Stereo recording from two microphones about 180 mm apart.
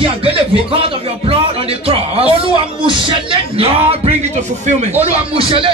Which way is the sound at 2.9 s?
30° right (ahead or behind).